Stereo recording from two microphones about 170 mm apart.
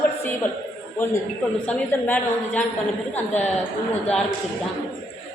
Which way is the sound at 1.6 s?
10° left (ahead or behind).